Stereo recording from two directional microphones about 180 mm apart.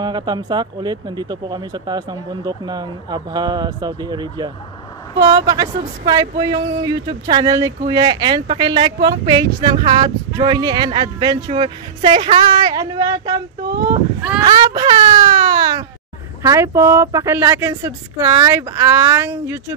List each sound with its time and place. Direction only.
0.0 s speech: 25° right (ahead or behind)
14.4 s baby cry: 25° right (ahead or behind)
16.4 s speech: 15° right (ahead or behind)